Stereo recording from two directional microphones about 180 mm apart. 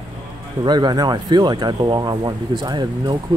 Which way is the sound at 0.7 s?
25° right (ahead or behind).